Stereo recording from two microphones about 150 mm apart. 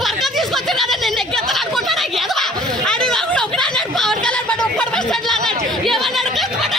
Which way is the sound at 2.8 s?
5° left (ahead or behind).